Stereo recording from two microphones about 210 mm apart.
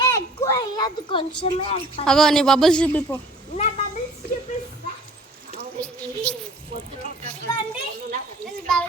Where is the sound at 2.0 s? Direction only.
Centre (ahead or behind).